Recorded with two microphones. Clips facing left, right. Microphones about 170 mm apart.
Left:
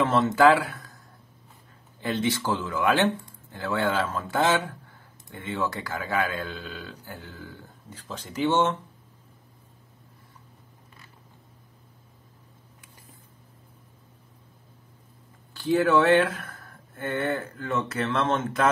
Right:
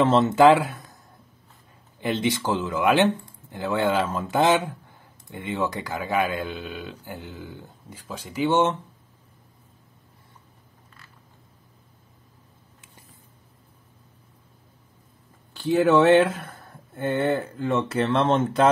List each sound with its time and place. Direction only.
0.0 s speech: 25° right (ahead or behind)
2.0 s speech: 20° right (ahead or behind)
15.5 s speech: 20° right (ahead or behind)